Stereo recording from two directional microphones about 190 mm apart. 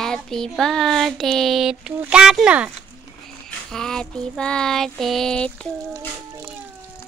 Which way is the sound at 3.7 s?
5° left (ahead or behind).